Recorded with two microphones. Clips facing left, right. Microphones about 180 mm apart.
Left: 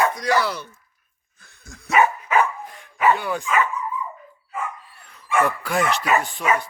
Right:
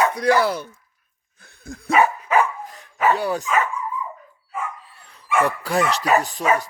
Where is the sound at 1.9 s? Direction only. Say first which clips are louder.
Right 1 dB; 30° right (ahead or behind).